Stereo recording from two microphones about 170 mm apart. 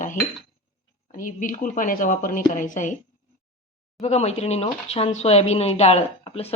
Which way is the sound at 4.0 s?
40° left (ahead or behind).